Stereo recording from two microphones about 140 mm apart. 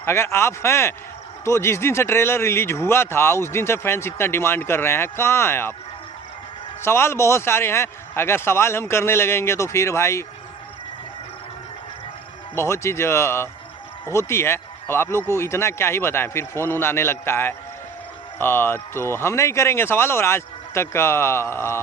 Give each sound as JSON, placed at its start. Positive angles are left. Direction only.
{"t": 0.0, "sound": "speech", "side_deg": 15}
{"t": 6.8, "sound": "speech", "side_deg": 20}
{"t": 12.5, "sound": "speech", "side_deg": 20}